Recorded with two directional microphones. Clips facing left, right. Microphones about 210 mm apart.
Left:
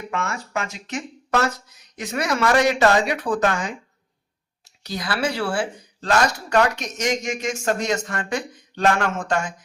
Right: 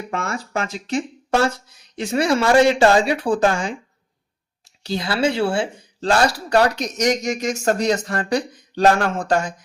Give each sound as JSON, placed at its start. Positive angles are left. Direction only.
{"t": 0.1, "sound": "speech", "side_deg": -35}
{"t": 4.8, "sound": "speech", "side_deg": -30}